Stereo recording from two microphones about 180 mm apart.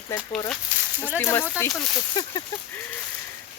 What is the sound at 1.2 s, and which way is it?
Speech, 10° left (ahead or behind).